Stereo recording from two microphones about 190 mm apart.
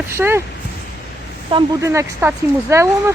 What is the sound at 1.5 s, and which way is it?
Speech, 25° right (ahead or behind).